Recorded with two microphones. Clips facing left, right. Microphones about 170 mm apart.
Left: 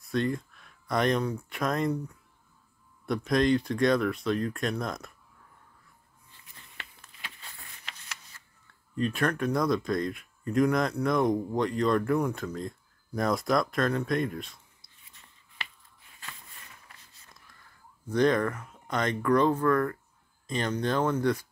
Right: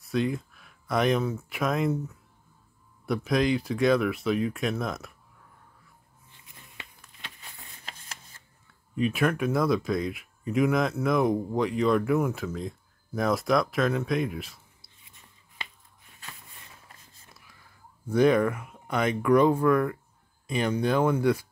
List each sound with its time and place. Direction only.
0.0 s speech: 5° right (ahead or behind)
6.3 s a sound: 15° right (ahead or behind)
8.9 s speech: 5° right (ahead or behind)
18.0 s speech: 10° right (ahead or behind)